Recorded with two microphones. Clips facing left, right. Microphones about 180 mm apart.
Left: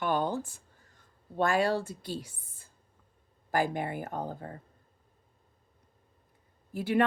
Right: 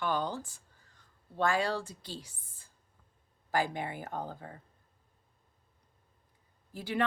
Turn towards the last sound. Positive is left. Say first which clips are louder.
# left 7 dB
turn(degrees=55)  # may be behind; listen again after turning